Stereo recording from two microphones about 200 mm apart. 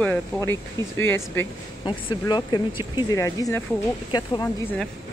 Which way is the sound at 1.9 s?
20° left (ahead or behind).